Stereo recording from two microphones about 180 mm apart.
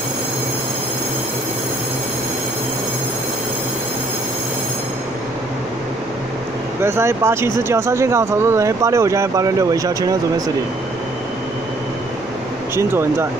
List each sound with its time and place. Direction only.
6.8 s speech: 15° right (ahead or behind)
12.7 s speech: 15° right (ahead or behind)